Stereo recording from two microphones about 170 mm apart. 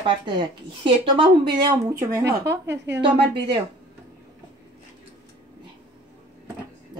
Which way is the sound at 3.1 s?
80° right.